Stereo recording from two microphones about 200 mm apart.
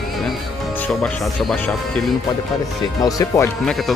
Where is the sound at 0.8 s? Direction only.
5° left (ahead or behind).